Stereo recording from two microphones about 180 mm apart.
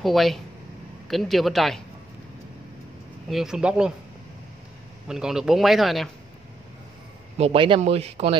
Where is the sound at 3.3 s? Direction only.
5° right (ahead or behind).